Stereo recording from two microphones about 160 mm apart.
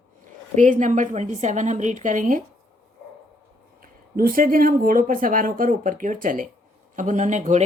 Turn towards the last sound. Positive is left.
turn(degrees=-50)  # may be behind; listen again after turning